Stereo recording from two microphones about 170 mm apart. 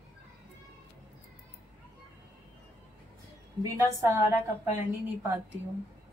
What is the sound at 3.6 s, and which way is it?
Speech, 20° right (ahead or behind).